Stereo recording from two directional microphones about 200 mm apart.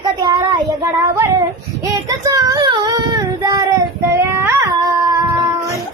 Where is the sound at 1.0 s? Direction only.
15° right (ahead or behind).